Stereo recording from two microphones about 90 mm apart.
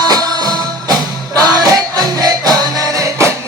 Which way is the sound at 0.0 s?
50° right (ahead or behind).